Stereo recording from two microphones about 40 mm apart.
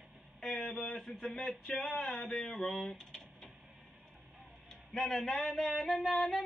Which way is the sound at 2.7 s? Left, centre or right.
Centre.